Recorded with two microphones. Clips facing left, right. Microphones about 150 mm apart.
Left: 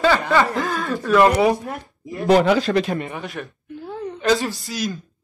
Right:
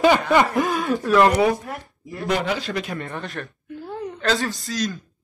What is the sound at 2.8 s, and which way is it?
Speech, 30° left (ahead or behind).